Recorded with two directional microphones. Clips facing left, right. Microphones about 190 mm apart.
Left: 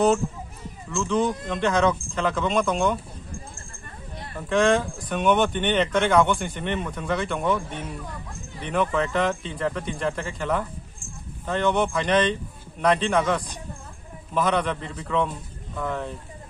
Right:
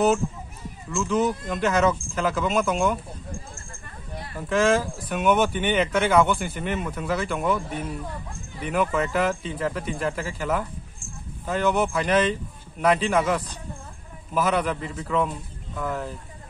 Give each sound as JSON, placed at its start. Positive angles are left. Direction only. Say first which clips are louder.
{"t": 0.8, "sound": "speech", "louder": "even", "side_deg": -5}
{"t": 4.4, "sound": "speech", "louder": "left 1 dB", "side_deg": -5}